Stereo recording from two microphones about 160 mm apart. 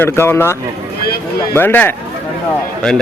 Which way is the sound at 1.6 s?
10° left (ahead or behind).